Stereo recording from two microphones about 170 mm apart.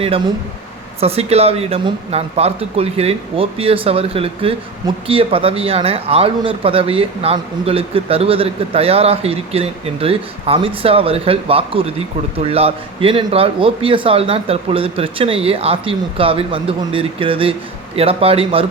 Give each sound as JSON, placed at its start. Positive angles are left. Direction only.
{"t": 1.0, "sound": "speech", "side_deg": -35}